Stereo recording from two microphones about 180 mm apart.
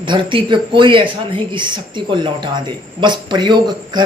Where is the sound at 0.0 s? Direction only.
25° right (ahead or behind).